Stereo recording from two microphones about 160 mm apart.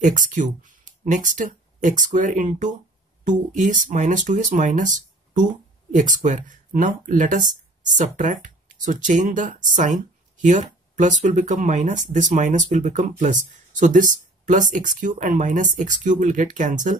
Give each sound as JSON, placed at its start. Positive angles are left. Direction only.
{"t": 0.0, "sound": "speech", "side_deg": -50}